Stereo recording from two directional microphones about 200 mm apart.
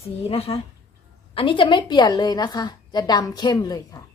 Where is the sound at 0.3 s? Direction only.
30° left (ahead or behind).